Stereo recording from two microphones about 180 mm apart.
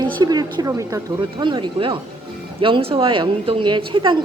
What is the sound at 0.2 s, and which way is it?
A woman's voice, 25° right (ahead or behind).